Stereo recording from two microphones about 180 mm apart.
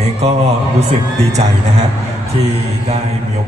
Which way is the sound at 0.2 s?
35° right (ahead or behind).